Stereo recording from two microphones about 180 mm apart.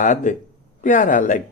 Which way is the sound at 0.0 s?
45° left (ahead or behind).